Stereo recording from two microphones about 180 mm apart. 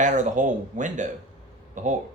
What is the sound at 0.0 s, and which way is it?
Speech, 45° right (ahead or behind).